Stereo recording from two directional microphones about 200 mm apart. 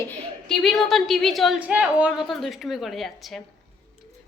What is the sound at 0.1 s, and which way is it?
A woman's voice, centre (ahead or behind).